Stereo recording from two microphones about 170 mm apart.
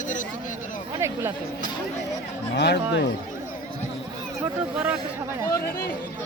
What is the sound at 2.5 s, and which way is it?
Speech, 85° left.